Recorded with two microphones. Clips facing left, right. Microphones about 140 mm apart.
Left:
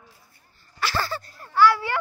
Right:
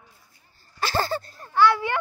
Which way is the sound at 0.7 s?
25° right (ahead or behind).